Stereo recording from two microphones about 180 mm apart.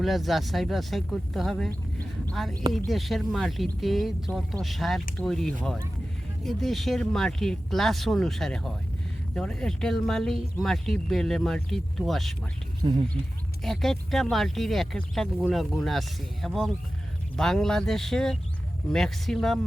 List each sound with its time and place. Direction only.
0.0 s speech: centre (ahead or behind)
2.7 s speech: centre (ahead or behind)
12.8 s speech: 25° right (ahead or behind)
13.7 s speech: centre (ahead or behind)